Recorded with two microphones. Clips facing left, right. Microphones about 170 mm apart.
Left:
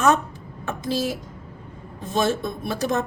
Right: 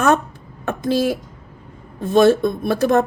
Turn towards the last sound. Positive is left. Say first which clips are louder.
# right 8 dB
turn(degrees=-55)  # may be behind; listen again after turning